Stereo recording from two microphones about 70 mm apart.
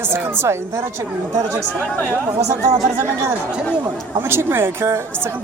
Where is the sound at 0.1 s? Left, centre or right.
Right.